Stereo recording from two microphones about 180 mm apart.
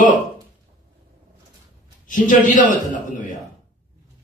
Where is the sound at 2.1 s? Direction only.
45° left (ahead or behind).